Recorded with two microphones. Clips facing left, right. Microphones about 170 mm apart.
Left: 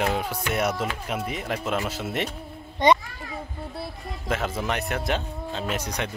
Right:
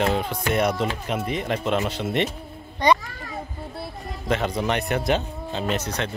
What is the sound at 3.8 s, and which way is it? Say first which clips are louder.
Speech: right 2 dB; 5° left (ahead or behind).